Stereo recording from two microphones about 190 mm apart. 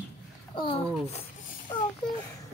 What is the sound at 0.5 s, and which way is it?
Speech, 25° left (ahead or behind).